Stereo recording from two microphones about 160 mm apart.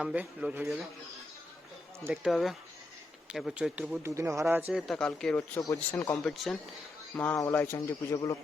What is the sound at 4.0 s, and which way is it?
Speech, 20° right (ahead or behind).